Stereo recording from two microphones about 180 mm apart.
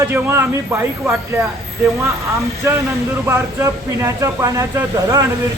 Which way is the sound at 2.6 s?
15° right (ahead or behind).